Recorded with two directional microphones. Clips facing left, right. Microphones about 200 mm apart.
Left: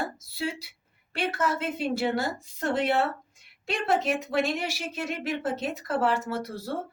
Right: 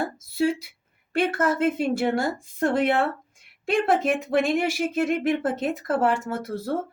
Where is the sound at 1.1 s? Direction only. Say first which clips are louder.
Right 5 dB; 50° right (ahead or behind).